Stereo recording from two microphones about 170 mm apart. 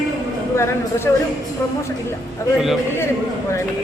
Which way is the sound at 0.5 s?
15° left (ahead or behind).